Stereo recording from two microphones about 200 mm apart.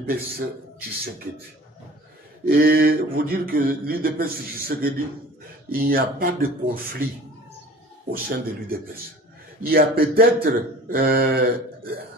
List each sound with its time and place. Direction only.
2.4 s speech: 45° right (ahead or behind)
8.1 s speech: 45° right (ahead or behind)